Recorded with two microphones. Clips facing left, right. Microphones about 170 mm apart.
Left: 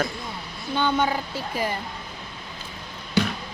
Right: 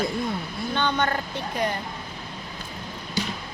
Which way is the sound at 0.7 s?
10° left (ahead or behind).